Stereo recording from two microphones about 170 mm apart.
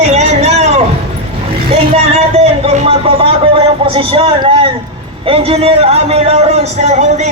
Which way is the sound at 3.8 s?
30° right (ahead or behind).